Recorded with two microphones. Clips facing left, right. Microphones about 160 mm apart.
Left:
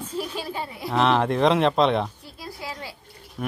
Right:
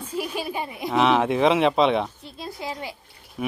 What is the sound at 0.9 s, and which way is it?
Speech, 5° right (ahead or behind).